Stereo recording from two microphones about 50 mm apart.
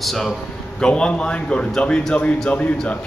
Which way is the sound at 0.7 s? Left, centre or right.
Centre.